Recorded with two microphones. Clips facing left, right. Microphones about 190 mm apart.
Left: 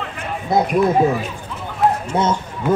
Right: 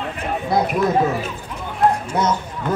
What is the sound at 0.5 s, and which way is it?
Speech, 25° left (ahead or behind).